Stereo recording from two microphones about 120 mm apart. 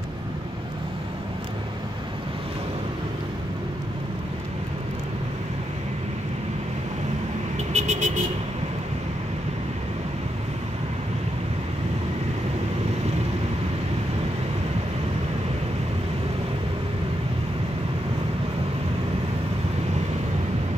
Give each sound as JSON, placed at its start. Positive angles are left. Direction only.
{"t": 7.5, "sound": "vehicle", "side_deg": -75}